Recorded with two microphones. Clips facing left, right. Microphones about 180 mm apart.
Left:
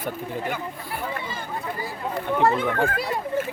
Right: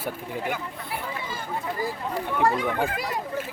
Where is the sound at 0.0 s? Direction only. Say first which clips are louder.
Left 2 dB; 10° right (ahead or behind).